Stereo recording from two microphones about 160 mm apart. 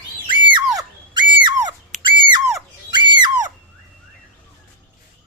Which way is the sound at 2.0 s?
30° right (ahead or behind).